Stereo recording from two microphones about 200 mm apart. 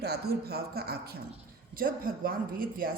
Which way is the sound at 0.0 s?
50° right (ahead or behind).